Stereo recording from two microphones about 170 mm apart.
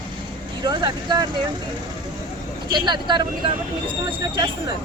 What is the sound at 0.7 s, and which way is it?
Speech, 25° right (ahead or behind).